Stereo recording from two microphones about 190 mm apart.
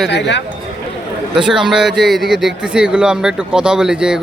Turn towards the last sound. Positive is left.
turn(degrees=-5)  # may be behind; listen again after turning